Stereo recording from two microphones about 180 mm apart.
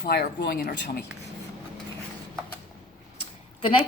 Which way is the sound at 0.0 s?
60° left (ahead or behind).